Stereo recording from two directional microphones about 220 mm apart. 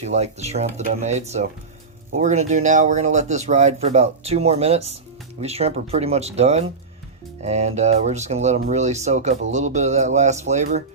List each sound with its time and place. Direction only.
0.1 s speech: 30° right (ahead or behind)
2.5 s speech: 35° right (ahead or behind)